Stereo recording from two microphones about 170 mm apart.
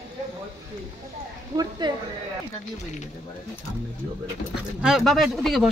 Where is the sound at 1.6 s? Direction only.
25° right (ahead or behind).